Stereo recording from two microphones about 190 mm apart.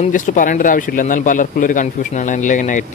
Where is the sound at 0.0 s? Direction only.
45° left (ahead or behind).